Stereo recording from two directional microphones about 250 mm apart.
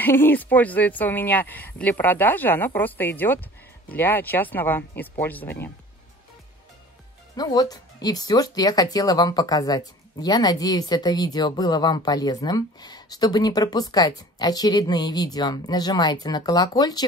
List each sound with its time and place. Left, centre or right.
0.0 s speech: centre
7.3 s speech: centre